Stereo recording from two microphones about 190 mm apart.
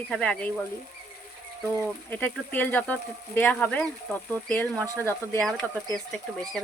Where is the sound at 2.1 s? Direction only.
10° left (ahead or behind).